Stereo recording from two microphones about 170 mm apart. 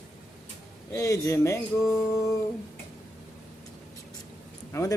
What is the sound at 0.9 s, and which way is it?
Speech, 20° left (ahead or behind).